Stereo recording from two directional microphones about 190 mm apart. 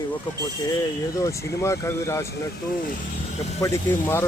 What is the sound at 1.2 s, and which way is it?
Speech, 15° left (ahead or behind).